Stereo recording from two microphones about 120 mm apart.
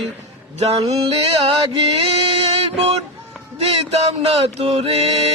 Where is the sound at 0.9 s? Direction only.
50° right (ahead or behind).